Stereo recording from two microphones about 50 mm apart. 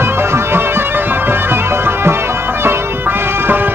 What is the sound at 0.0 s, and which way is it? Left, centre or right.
Music, right.